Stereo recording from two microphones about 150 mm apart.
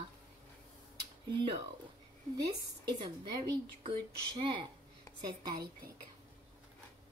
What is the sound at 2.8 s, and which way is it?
A woman's voice, 30° right (ahead or behind).